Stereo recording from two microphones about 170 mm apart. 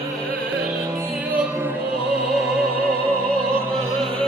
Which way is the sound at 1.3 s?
10° right (ahead or behind).